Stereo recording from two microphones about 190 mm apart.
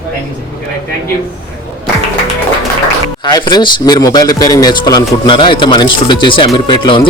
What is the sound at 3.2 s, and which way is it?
Speech, 20° left (ahead or behind).